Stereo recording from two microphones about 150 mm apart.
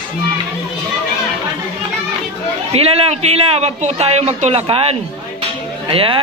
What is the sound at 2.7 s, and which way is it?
A man's voice, 40° right (ahead or behind).